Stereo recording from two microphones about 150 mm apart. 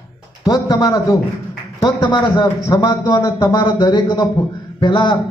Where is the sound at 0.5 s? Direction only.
25° left (ahead or behind).